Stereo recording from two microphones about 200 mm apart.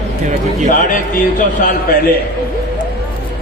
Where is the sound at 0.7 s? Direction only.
40° left (ahead or behind).